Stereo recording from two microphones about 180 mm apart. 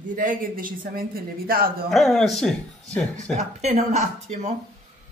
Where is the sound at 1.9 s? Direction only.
Centre (ahead or behind).